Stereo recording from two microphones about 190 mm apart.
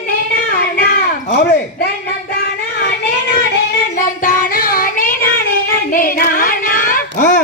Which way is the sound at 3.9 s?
45° left (ahead or behind).